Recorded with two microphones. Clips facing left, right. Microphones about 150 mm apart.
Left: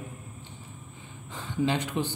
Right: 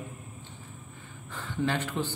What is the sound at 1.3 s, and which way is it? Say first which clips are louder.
Speech: left 2 dB; 15° left (ahead or behind).